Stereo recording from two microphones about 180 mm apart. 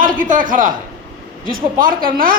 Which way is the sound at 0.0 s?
50° right (ahead or behind).